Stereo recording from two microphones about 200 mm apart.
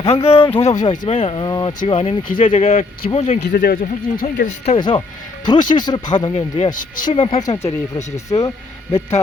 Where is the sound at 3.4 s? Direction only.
45° left (ahead or behind).